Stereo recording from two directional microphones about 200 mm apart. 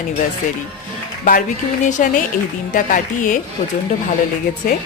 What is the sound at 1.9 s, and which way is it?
A woman's voice, 40° left (ahead or behind).